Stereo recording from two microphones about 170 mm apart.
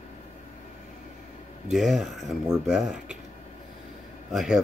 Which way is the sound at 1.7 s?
Centre (ahead or behind).